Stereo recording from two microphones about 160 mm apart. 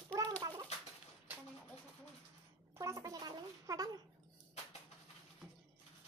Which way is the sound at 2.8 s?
20° right (ahead or behind).